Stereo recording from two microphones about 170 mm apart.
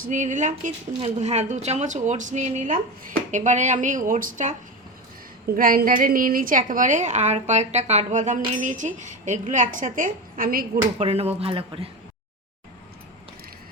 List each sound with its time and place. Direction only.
0.1 s a woman's voice: 45° right (ahead or behind)
5.5 s a woman's voice: 55° right (ahead or behind)
10.9 s speech: 40° right (ahead or behind)